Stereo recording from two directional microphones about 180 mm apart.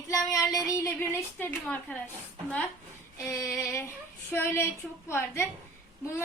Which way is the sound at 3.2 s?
15° left (ahead or behind).